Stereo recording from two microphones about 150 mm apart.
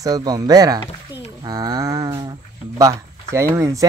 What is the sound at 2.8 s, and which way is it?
Speech, 20° right (ahead or behind).